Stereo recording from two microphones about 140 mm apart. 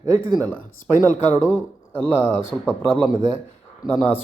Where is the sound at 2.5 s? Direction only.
Centre (ahead or behind).